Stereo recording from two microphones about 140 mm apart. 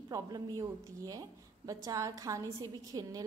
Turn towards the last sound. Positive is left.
turn(degrees=-25)  # may be behind; listen again after turning